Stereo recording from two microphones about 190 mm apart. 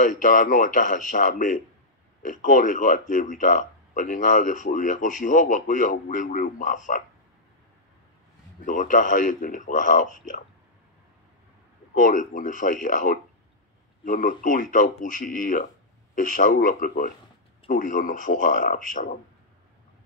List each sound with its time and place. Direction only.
0.0 s speech: 45° left (ahead or behind)
8.6 s speech: 45° left (ahead or behind)
11.9 s speech: 45° left (ahead or behind)